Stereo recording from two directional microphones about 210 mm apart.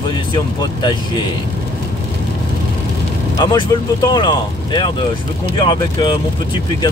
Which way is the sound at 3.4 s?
20° left (ahead or behind).